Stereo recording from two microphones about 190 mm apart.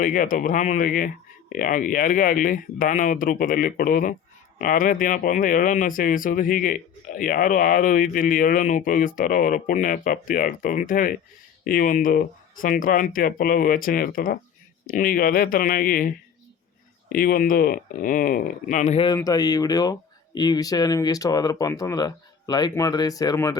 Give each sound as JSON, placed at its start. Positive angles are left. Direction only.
{"t": 0.0, "sound": "speech", "side_deg": 45}
{"t": 18.9, "sound": "speech", "side_deg": 20}